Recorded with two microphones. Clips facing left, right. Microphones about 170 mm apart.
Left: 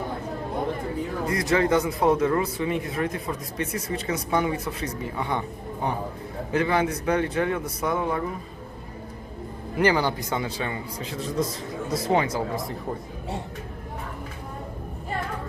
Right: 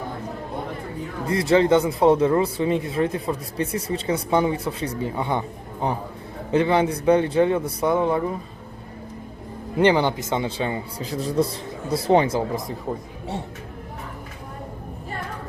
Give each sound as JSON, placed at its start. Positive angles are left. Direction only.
{"t": 1.3, "sound": "speech", "side_deg": -30}
{"t": 9.7, "sound": "speech", "side_deg": -25}